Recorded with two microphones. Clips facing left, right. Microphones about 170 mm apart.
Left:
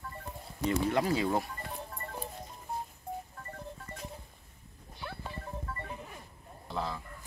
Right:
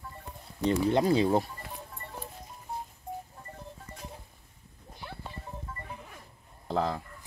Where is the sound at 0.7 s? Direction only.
30° right (ahead or behind).